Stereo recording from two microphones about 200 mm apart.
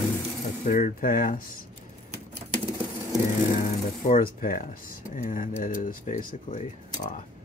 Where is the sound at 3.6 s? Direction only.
45° left (ahead or behind).